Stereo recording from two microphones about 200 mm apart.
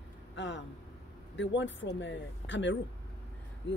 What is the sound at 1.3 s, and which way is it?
Speech, 65° left (ahead or behind).